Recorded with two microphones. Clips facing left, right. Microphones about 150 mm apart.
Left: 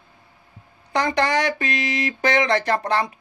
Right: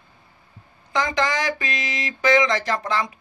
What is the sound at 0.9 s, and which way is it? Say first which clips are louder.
Speech: left 2 dB; 60° left (ahead or behind).